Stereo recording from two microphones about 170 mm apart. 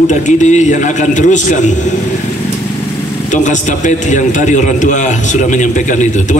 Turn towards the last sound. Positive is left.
turn(degrees=45)  # may be behind; listen again after turning